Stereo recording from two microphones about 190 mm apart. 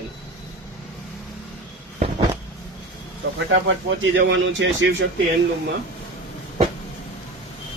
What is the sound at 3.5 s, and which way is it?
A man's voice, 80° right.